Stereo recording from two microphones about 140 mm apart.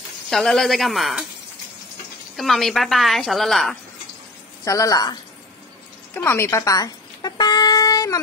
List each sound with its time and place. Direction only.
0.3 s a woman's voice: centre (ahead or behind)
2.3 s a woman's voice: centre (ahead or behind)
4.6 s speech: 25° left (ahead or behind)
6.1 s a sound: 15° left (ahead or behind)